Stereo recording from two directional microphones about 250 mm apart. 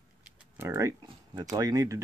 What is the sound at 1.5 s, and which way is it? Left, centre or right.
Speech, centre.